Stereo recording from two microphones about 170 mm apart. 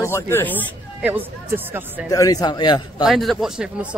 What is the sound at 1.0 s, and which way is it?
Speech, 10° right (ahead or behind).